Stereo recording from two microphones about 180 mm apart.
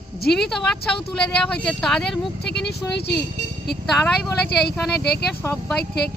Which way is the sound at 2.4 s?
65° left (ahead or behind).